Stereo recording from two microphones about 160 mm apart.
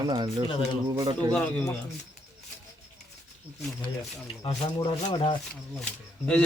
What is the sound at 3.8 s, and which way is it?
Speech, 30° left (ahead or behind).